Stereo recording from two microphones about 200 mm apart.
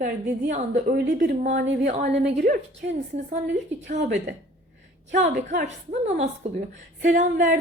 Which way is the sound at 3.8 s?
35° right (ahead or behind).